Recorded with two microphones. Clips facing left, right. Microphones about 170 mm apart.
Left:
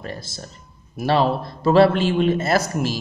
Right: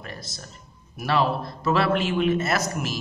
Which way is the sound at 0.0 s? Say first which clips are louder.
Left 6 dB; 30° left (ahead or behind).